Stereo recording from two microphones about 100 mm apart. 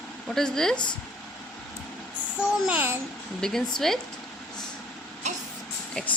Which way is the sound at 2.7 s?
15° right (ahead or behind).